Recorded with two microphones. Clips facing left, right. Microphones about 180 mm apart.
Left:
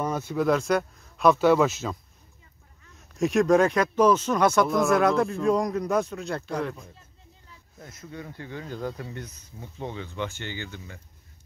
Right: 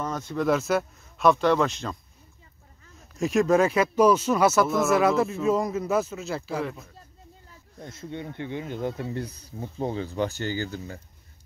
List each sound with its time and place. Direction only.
0.0 s speech: 10° left (ahead or behind)
0.5 s speech: 5° right (ahead or behind)
3.2 s speech: centre (ahead or behind)
7.9 s speech: 25° right (ahead or behind)